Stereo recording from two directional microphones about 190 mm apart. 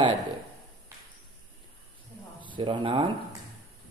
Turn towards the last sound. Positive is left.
turn(degrees=-25)  # may be behind; listen again after turning